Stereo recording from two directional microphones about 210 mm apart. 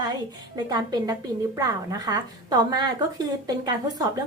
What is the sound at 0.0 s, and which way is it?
A woman's voice, 20° right (ahead or behind).